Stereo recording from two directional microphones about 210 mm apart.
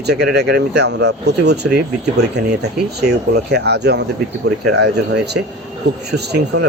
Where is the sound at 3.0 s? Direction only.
50° right (ahead or behind).